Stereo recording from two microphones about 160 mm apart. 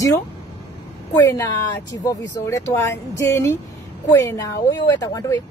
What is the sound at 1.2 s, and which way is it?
A woman's voice, 20° left (ahead or behind).